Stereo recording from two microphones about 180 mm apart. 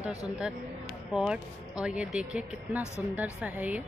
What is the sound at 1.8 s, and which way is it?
Speech, 5° right (ahead or behind).